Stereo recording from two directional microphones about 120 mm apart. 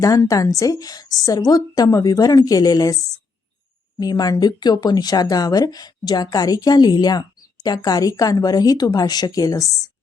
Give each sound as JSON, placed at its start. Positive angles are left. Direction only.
{"t": 0.0, "sound": "a woman's voice", "side_deg": 25}
{"t": 4.0, "sound": "speech", "side_deg": 35}